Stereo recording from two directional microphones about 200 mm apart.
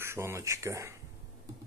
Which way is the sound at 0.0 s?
10° right (ahead or behind).